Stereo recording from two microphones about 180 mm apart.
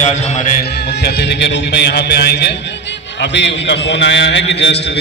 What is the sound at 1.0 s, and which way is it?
A man's voice, 70° left (ahead or behind).